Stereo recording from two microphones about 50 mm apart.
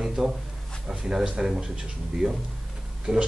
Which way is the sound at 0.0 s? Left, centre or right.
Centre.